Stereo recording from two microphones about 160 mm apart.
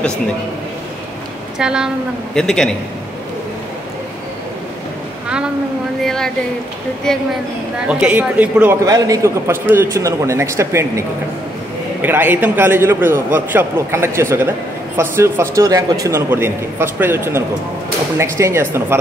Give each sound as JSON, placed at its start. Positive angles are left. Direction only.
{"t": 1.6, "sound": "a man's voice", "side_deg": -5}
{"t": 6.0, "sound": "a man's voice", "side_deg": 5}
{"t": 7.9, "sound": "a man's voice", "side_deg": -10}
{"t": 8.8, "sound": "a man's voice", "side_deg": -20}